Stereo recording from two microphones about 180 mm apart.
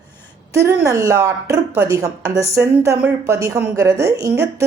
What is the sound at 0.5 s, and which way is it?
A woman's voice, 15° right (ahead or behind).